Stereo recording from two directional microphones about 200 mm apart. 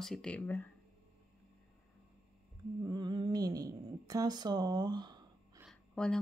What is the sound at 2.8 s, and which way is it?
Humming, 20° right (ahead or behind).